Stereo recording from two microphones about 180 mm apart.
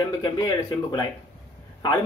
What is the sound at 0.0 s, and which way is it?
Speech, 25° left (ahead or behind).